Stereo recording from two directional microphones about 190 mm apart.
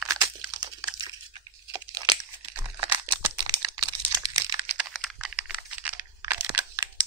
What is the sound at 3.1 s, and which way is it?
Computer keyboard, 20° right (ahead or behind).